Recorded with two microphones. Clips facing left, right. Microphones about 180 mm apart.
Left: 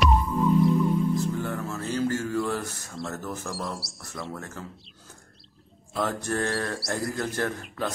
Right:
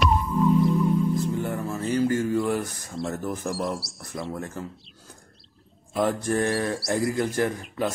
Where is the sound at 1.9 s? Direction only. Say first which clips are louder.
Right 4 dB; 15° right (ahead or behind).